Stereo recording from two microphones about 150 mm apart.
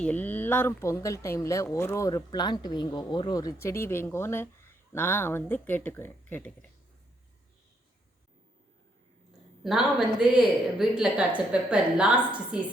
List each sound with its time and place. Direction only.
0.0 s speech: 10° left (ahead or behind)
9.6 s a woman's voice: 5° right (ahead or behind)